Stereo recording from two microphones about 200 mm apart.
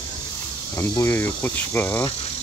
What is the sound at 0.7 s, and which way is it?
Speech, 15° left (ahead or behind).